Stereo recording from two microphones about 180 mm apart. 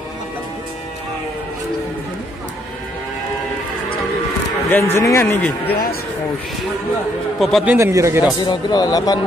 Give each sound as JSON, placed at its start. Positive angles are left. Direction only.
{"t": 4.6, "sound": "speech", "side_deg": 10}
{"t": 5.7, "sound": "speech", "side_deg": 55}
{"t": 7.3, "sound": "a man's voice", "side_deg": 0}
{"t": 7.7, "sound": "a man's voice", "side_deg": -15}
{"t": 8.4, "sound": "speech", "side_deg": 25}